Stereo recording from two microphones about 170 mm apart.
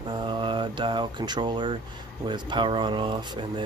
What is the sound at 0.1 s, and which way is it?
Speech, 30° right (ahead or behind).